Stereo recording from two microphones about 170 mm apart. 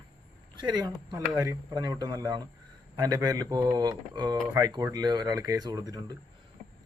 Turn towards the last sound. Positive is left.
turn(degrees=-25)  # may be behind; listen again after turning